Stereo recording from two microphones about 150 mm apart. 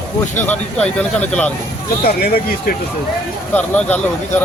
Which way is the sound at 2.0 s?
90° left.